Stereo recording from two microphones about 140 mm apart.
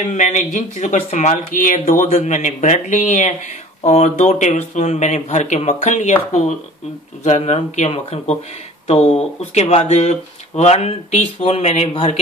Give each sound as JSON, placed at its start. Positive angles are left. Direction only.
{"t": 0.0, "sound": "speech", "side_deg": 60}
{"t": 3.8, "sound": "speech", "side_deg": 50}
{"t": 7.2, "sound": "speech", "side_deg": 50}